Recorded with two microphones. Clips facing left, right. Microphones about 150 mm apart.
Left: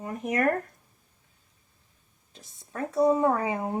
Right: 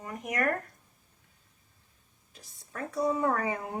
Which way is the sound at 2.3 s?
25° left (ahead or behind).